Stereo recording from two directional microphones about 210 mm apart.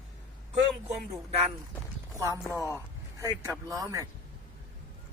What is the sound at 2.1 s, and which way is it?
Speech, 15° right (ahead or behind).